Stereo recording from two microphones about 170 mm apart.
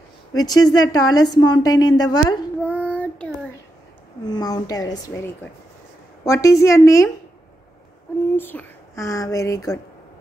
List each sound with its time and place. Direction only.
0.4 s a woman's voice: 25° left (ahead or behind)
2.6 s child singing: 10° left (ahead or behind)
4.3 s a woman's voice: 25° left (ahead or behind)
8.4 s speech: 10° left (ahead or behind)